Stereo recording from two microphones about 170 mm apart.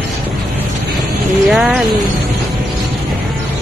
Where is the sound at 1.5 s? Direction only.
Centre (ahead or behind).